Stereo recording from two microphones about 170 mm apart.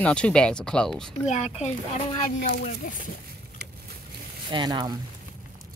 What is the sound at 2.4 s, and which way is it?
Speech, 55° left (ahead or behind).